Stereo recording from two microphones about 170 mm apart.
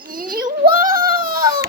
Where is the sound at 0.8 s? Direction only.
55° right (ahead or behind).